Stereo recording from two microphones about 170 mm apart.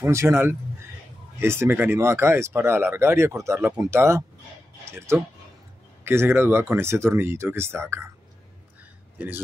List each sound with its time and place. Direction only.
0.0 s speech: 15° right (ahead or behind)